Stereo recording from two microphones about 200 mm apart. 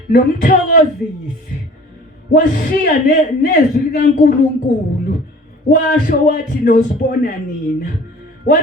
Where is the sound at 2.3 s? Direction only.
40° left (ahead or behind).